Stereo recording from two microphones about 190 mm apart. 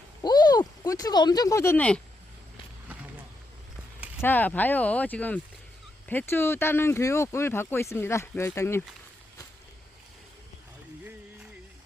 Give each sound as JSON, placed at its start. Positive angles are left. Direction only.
{"t": 0.2, "sound": "speech", "side_deg": 20}
{"t": 4.2, "sound": "speech", "side_deg": 10}